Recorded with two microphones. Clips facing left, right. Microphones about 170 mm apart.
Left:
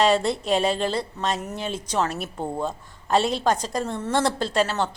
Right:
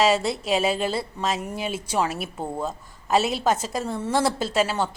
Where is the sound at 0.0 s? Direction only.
Centre (ahead or behind).